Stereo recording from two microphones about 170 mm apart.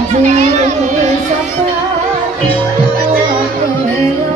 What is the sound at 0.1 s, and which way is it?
Speech, 45° right (ahead or behind).